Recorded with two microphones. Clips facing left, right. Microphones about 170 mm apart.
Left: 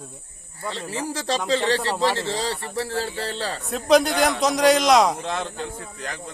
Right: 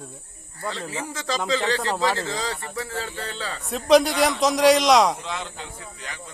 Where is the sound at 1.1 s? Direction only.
35° left (ahead or behind).